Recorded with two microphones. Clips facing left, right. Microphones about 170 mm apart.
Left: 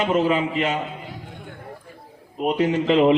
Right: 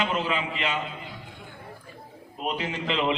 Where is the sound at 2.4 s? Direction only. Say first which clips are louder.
Left 10 dB; 45° left (ahead or behind).